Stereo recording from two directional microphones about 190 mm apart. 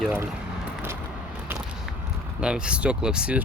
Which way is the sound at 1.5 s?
10° right (ahead or behind).